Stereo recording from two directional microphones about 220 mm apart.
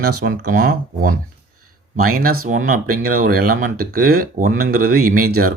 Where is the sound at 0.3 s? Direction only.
40° right (ahead or behind).